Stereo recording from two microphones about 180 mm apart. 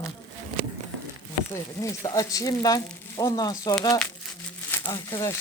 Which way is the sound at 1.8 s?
20° left (ahead or behind).